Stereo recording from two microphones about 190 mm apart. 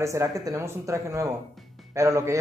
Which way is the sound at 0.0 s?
15° right (ahead or behind).